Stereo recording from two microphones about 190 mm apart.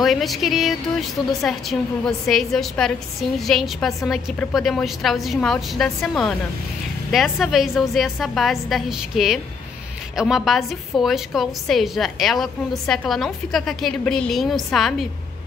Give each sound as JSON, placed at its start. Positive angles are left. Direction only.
{"t": 0.0, "sound": "a woman's voice", "side_deg": 0}